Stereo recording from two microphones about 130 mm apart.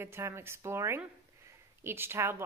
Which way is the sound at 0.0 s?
20° right (ahead or behind).